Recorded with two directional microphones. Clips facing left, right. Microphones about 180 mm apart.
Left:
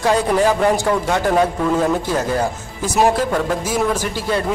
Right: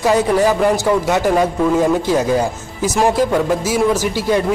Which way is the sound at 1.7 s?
10° right (ahead or behind).